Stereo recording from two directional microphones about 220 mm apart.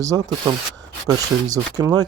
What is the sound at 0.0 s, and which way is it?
Speech, 15° right (ahead or behind).